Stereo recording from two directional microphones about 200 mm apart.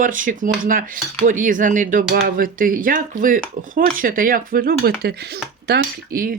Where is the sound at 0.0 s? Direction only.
40° right (ahead or behind).